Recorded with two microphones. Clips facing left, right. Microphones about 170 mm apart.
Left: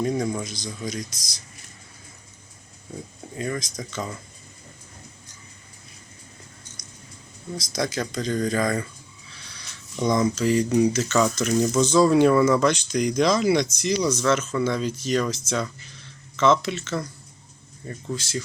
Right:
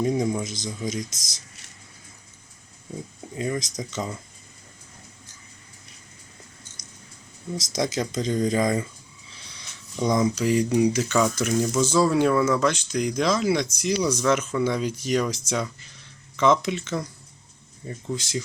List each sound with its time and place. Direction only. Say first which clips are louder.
0.2 s speech: right 1 dB; 20° right (ahead or behind)
3.3 s speech: right 1 dB; 20° right (ahead or behind)
7.5 s speech: right 1 dB; 20° right (ahead or behind)
9.3 s a sound: even; 20° right (ahead or behind)
10.0 s speech: left 1 dB; 10° right (ahead or behind)